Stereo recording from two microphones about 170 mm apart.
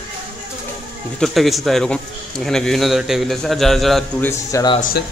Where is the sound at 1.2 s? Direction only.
Centre (ahead or behind).